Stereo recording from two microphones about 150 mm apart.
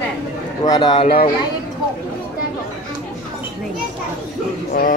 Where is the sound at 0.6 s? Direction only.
25° left (ahead or behind).